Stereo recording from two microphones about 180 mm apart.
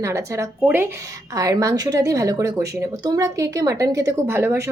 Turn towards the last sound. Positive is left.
turn(degrees=-15)  # may be behind; listen again after turning